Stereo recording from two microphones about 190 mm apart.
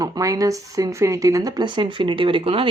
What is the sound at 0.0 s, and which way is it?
Speech, 20° right (ahead or behind).